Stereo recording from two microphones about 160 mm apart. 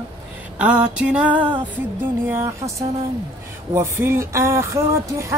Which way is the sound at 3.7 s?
15° right (ahead or behind).